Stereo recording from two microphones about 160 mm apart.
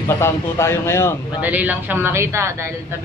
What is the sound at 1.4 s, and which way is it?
Speech, 10° right (ahead or behind).